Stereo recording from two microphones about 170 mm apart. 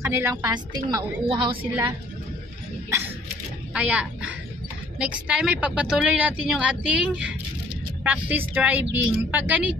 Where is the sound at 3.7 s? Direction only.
5° right (ahead or behind).